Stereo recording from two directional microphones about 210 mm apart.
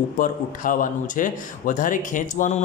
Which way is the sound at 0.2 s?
40° left (ahead or behind).